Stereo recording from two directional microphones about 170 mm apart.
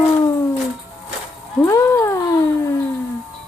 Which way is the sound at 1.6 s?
15° left (ahead or behind).